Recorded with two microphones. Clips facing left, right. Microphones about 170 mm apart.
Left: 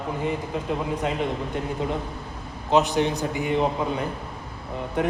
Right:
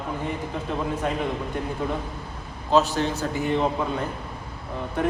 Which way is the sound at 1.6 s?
20° left (ahead or behind).